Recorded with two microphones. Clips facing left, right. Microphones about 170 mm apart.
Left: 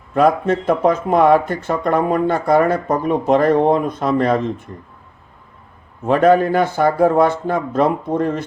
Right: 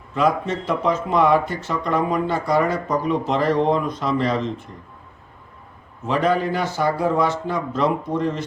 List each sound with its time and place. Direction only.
0.1 s speech: 55° left (ahead or behind)
6.1 s speech: 50° left (ahead or behind)